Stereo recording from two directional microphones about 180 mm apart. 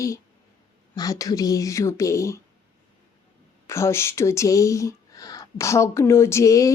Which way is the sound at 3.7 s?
15° left (ahead or behind).